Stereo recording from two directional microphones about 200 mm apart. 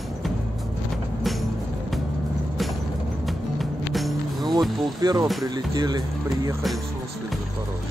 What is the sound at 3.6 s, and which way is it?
Music, centre (ahead or behind).